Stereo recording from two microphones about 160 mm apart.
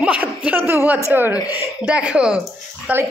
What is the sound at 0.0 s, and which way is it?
Chuckle, 10° right (ahead or behind).